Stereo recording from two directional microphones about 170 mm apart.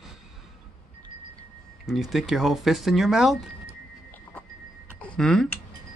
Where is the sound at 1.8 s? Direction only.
Centre (ahead or behind).